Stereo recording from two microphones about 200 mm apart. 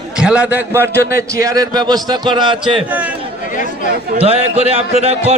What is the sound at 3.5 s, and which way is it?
Chatter, 40° left (ahead or behind).